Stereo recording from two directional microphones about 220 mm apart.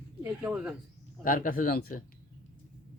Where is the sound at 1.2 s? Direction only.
40° left (ahead or behind).